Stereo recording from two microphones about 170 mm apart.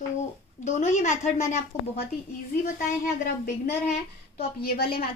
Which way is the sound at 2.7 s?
55° left (ahead or behind).